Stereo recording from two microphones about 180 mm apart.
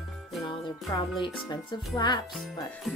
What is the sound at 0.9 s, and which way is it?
Speech, 20° left (ahead or behind).